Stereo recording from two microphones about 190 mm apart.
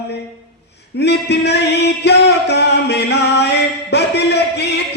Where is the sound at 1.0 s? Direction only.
60° left (ahead or behind).